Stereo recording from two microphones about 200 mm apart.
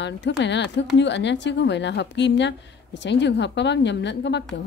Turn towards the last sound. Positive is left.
turn(degrees=60)  # may be behind; listen again after turning